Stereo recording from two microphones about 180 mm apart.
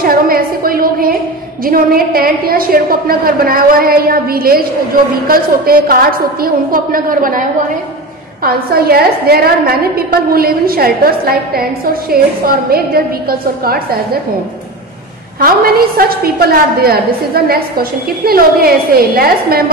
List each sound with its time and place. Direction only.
0.0 s a woman's voice: 55° right (ahead or behind)
8.5 s a woman's voice: 60° right (ahead or behind)
15.4 s a woman's voice: 55° right (ahead or behind)